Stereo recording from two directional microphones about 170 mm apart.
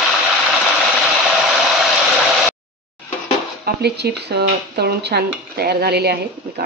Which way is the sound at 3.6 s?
75° right (ahead or behind).